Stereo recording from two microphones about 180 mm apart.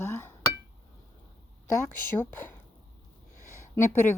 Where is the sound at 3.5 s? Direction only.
15° left (ahead or behind).